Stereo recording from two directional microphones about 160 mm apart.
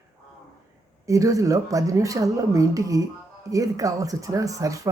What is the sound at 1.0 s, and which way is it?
A woman's voice, 20° right (ahead or behind).